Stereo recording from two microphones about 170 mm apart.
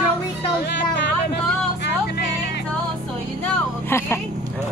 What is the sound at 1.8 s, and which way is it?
Music, 80° left.